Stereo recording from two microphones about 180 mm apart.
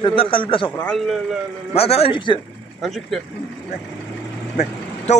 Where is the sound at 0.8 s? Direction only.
5° left (ahead or behind).